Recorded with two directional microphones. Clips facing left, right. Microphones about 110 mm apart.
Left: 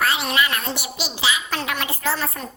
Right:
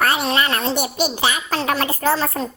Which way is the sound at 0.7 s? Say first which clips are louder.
Right 9 dB; 50° right (ahead or behind).